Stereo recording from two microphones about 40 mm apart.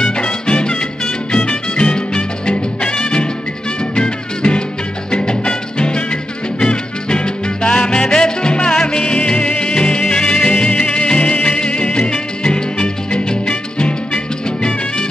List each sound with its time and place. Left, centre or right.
0.0 s music: left